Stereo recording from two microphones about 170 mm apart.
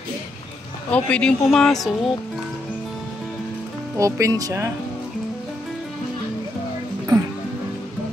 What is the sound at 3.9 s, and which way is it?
Speech, 20° right (ahead or behind).